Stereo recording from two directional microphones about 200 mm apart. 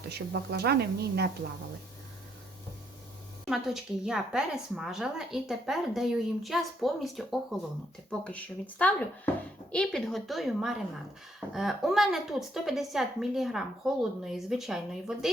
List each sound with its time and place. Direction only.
0.1 s a woman's voice: 55° right (ahead or behind)
3.5 s a woman's voice: centre (ahead or behind)